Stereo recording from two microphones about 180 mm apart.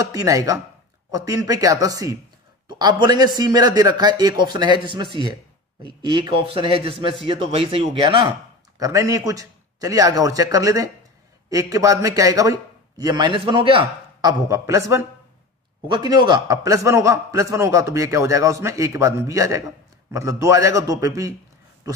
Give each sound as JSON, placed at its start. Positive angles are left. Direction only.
{"t": 0.1, "sound": "a man's voice", "side_deg": -20}
{"t": 8.7, "sound": "a man's voice", "side_deg": -20}
{"t": 14.5, "sound": "a man's voice", "side_deg": -15}